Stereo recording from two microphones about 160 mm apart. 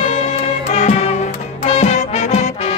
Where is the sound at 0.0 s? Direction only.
45° left (ahead or behind).